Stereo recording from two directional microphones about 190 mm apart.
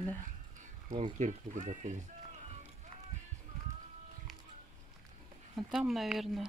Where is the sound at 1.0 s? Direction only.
40° right (ahead or behind).